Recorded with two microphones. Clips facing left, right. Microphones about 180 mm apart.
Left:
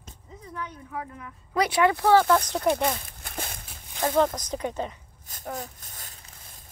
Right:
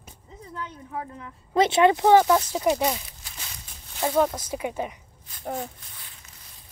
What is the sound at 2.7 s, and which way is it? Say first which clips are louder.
Walk: right 1 dB; 55° left (ahead or behind).